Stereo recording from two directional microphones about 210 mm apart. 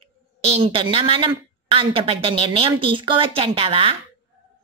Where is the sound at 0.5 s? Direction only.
25° right (ahead or behind).